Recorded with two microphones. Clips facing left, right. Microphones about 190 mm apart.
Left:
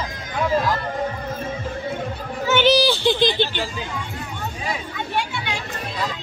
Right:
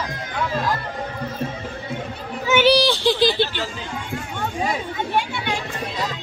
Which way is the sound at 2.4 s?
10° right (ahead or behind).